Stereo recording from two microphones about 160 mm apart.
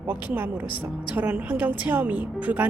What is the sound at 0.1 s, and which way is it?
Speech, 10° right (ahead or behind).